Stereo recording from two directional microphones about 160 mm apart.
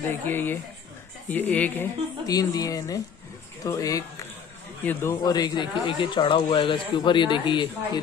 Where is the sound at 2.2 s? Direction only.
25° left (ahead or behind).